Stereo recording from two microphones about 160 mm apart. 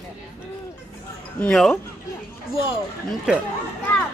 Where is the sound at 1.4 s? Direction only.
5° left (ahead or behind).